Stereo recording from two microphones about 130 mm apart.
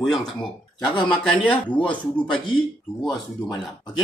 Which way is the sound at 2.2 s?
40° left (ahead or behind).